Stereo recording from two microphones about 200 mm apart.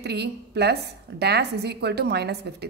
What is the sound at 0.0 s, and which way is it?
A woman's voice, 55° right (ahead or behind).